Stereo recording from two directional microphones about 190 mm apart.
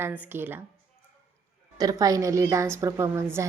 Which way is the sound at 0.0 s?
10° right (ahead or behind).